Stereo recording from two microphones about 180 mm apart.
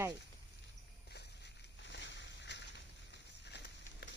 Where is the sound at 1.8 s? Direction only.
75° left (ahead or behind).